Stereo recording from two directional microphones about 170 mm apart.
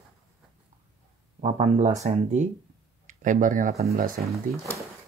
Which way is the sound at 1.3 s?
40° right (ahead or behind).